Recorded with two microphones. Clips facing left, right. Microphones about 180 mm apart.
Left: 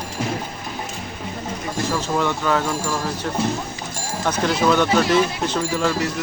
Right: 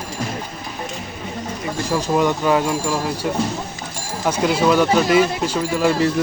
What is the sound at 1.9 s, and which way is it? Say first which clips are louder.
Speech: right 5 dB; 15° right (ahead or behind).